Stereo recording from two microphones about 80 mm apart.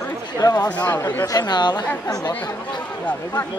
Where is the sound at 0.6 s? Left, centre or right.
Centre.